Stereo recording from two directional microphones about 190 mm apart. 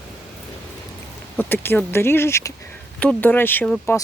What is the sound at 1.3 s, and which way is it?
Speech, 10° left (ahead or behind).